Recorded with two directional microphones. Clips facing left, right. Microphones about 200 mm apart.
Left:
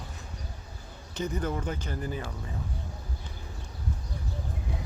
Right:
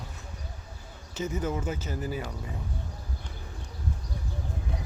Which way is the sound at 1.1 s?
5° right (ahead or behind).